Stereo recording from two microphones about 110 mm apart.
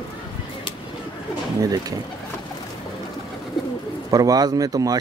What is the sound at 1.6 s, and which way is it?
Speech, 35° right (ahead or behind).